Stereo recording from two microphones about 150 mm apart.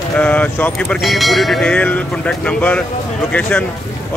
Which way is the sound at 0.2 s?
10° left (ahead or behind).